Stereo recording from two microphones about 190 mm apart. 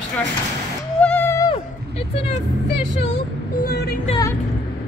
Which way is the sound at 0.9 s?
10° left (ahead or behind).